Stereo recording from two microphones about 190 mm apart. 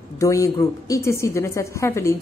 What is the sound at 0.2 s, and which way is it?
A woman's voice, 15° left (ahead or behind).